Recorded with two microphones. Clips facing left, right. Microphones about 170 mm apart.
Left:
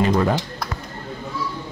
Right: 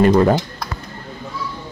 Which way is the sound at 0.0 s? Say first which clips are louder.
Right 6 dB; 45° right (ahead or behind).